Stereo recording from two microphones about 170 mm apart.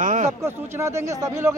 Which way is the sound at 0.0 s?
50° right (ahead or behind).